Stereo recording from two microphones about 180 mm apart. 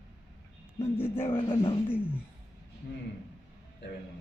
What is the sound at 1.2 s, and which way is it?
Speech, 30° left (ahead or behind).